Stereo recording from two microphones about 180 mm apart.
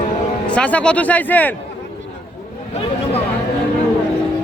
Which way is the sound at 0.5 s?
5° left (ahead or behind).